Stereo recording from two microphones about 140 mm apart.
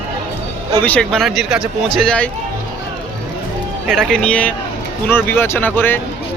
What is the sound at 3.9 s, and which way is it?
A man's voice, 5° left (ahead or behind).